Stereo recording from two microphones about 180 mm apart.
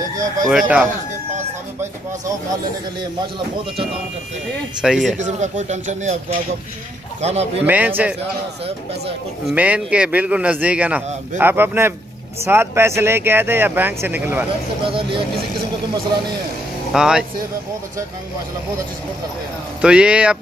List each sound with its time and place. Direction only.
0.5 s speech: 5° right (ahead or behind)
4.8 s speech: 5° right (ahead or behind)
5.2 s speech: 40° right (ahead or behind)
7.2 s speech: 35° right (ahead or behind)
7.6 s speech: 10° right (ahead or behind)
9.5 s speech: 5° right (ahead or behind)
14.9 s speech: 30° right (ahead or behind)
16.9 s speech: 5° right (ahead or behind)
19.8 s speech: 5° right (ahead or behind)